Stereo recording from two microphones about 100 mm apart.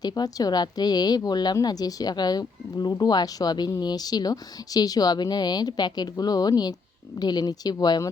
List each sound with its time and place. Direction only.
0.0 s a woman's voice: 40° left (ahead or behind)